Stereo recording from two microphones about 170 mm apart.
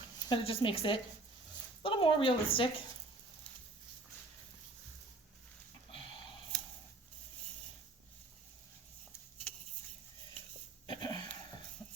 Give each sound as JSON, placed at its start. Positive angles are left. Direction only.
{"t": 0.3, "sound": "a woman's voice", "side_deg": 30}
{"t": 6.5, "sound": "a sound", "side_deg": 5}
{"t": 10.8, "sound": "wheeze", "side_deg": 25}